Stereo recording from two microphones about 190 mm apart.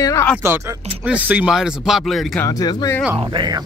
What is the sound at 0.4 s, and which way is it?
A man's voice, 15° right (ahead or behind).